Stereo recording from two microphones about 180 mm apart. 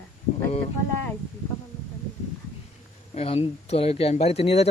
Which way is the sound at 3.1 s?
35° left (ahead or behind).